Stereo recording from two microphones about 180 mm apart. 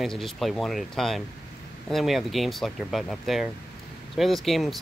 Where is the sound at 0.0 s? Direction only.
Centre (ahead or behind).